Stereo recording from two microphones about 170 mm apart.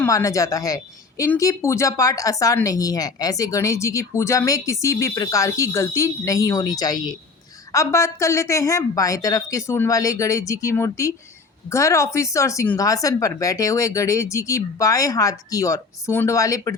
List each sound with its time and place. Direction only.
0.0 s speech: 20° left (ahead or behind)